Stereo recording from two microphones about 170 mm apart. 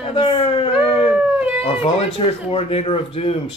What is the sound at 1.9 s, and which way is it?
Speech, 35° left (ahead or behind).